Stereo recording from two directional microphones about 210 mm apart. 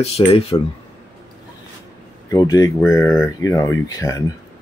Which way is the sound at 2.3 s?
15° left (ahead or behind).